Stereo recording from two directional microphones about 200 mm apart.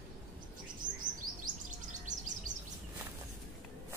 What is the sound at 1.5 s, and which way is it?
Chirp, 20° right (ahead or behind).